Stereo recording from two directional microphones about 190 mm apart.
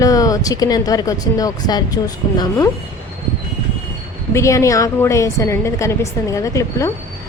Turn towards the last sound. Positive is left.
turn(degrees=15)  # may be behind; listen again after turning